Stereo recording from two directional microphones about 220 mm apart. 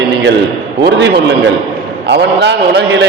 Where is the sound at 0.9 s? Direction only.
50° right (ahead or behind).